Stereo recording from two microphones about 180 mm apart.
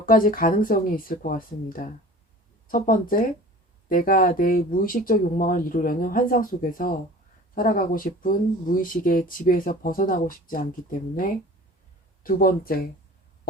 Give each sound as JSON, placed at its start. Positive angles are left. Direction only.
{"t": 0.0, "sound": "speech", "side_deg": 50}